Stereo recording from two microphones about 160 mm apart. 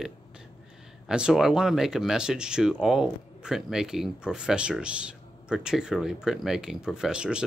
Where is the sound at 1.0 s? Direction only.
5° right (ahead or behind).